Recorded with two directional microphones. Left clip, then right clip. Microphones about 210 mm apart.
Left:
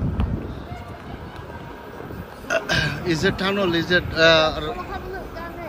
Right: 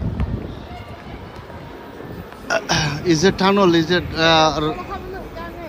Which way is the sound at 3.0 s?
10° right (ahead or behind).